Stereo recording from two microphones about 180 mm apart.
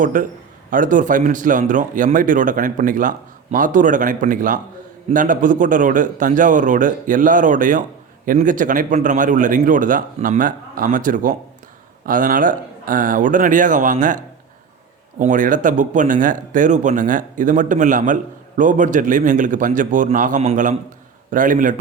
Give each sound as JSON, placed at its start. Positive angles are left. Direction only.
{"t": 0.0, "sound": "a man's voice", "side_deg": -45}
{"t": 15.2, "sound": "a man's voice", "side_deg": -45}